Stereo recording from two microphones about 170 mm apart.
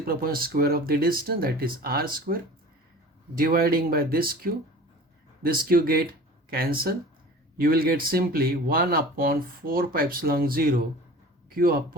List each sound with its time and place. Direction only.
0.0 s a man's voice: 60° right (ahead or behind)